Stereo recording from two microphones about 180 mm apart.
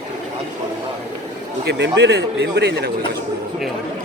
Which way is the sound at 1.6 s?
75° right (ahead or behind).